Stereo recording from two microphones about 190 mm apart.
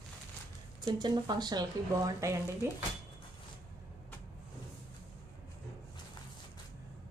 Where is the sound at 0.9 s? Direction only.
20° right (ahead or behind).